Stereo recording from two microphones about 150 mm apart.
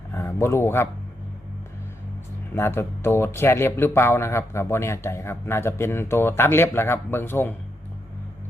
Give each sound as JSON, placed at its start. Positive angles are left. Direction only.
{"t": 0.1, "sound": "a man's voice", "side_deg": 20}
{"t": 2.6, "sound": "speech", "side_deg": 15}